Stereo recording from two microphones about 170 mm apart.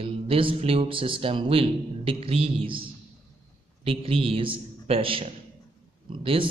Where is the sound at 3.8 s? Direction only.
35° right (ahead or behind).